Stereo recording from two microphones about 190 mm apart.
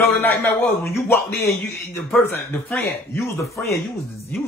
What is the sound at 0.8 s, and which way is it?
Speech, 10° left (ahead or behind).